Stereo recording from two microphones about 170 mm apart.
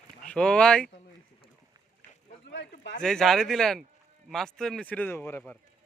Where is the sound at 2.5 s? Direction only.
90° left.